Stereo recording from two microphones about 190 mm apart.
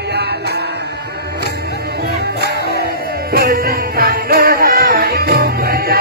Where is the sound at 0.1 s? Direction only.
60° right (ahead or behind).